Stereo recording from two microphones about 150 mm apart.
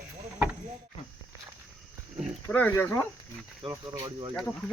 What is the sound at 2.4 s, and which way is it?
Cricket, 15° left (ahead or behind).